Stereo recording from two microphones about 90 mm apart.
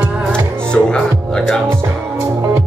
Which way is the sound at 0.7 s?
10° left (ahead or behind).